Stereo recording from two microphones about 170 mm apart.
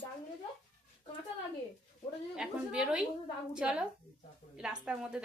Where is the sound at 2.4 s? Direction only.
5° right (ahead or behind).